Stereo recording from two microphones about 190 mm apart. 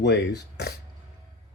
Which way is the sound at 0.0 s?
65° left (ahead or behind).